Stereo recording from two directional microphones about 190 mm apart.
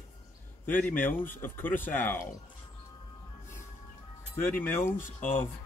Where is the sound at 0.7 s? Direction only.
10° left (ahead or behind).